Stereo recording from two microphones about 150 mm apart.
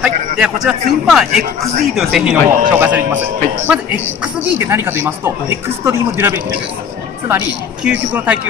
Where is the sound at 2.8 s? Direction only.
10° right (ahead or behind).